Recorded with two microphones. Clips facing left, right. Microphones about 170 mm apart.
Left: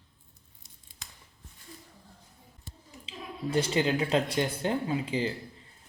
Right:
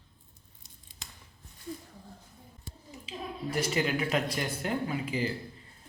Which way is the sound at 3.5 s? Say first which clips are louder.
Left 3 dB; 30° left (ahead or behind).